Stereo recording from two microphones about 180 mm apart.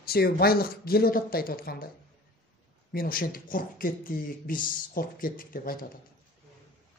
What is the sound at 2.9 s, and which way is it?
Speech, 55° left (ahead or behind).